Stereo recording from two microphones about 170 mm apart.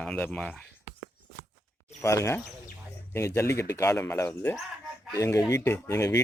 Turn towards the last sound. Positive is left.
turn(degrees=15)  # may be behind; listen again after turning